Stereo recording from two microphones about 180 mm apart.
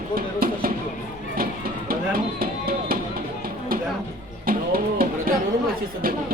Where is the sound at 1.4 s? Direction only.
55° right (ahead or behind).